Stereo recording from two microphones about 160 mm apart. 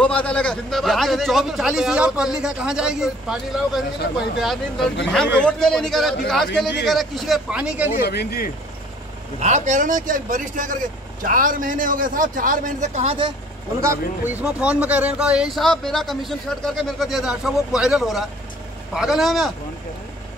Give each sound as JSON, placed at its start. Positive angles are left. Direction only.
{"t": 0.0, "sound": "speech", "side_deg": 10}
{"t": 8.0, "sound": "speech", "side_deg": 85}
{"t": 9.4, "sound": "speech", "side_deg": -50}
{"t": 13.7, "sound": "speech", "side_deg": -15}